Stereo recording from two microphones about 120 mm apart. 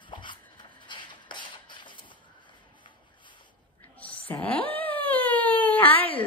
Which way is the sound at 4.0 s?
10° left (ahead or behind).